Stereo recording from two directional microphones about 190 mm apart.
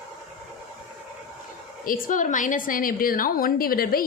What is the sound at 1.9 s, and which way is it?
A woman's voice, 45° left (ahead or behind).